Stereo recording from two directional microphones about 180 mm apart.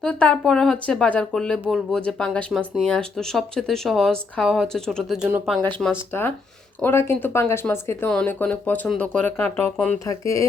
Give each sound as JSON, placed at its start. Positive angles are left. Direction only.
{"t": 0.0, "sound": "speech", "side_deg": 5}
{"t": 6.8, "sound": "speech", "side_deg": 10}
{"t": 10.1, "sound": "speech", "side_deg": 20}